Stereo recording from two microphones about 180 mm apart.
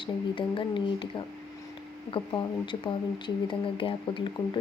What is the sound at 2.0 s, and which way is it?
Speech, 30° left (ahead or behind).